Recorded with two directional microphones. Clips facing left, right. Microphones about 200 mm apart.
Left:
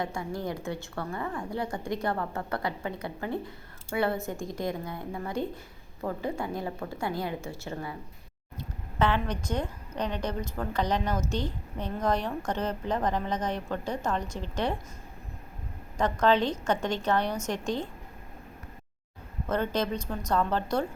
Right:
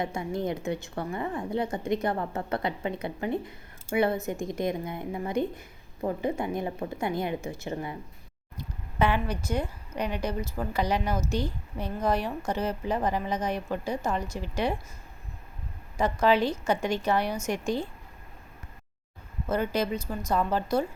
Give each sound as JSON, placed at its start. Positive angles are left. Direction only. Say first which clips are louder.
{"t": 0.0, "sound": "a woman's voice", "louder": "right 3 dB", "side_deg": -20}
{"t": 16.0, "sound": "speech", "louder": "right 1 dB", "side_deg": -10}
{"t": 19.5, "sound": "speech", "louder": "right 1 dB", "side_deg": -10}